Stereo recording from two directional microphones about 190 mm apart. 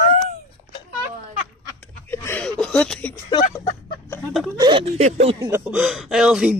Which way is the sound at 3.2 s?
25° left (ahead or behind).